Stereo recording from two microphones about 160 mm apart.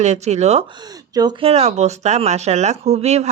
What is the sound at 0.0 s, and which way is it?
Speech, 45° right (ahead or behind).